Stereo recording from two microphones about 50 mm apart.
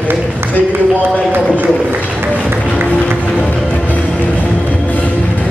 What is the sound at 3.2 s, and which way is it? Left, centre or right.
Music, left.